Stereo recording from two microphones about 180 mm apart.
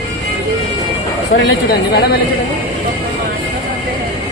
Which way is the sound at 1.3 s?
60° left (ahead or behind).